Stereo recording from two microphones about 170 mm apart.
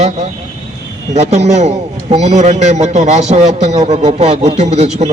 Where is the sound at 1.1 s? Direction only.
40° right (ahead or behind).